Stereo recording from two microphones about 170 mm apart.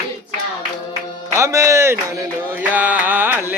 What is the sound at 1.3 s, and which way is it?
Music, 15° right (ahead or behind).